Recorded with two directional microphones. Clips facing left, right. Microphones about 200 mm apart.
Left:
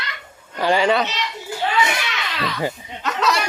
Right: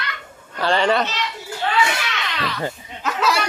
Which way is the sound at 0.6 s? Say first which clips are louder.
Left 1 dB; 10° left (ahead or behind).